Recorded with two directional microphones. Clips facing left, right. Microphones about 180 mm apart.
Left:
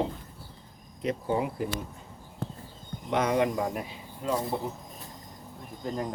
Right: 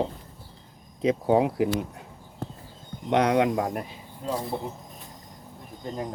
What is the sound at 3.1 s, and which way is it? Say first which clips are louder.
Speech: right 4 dB; 70° right (ahead or behind).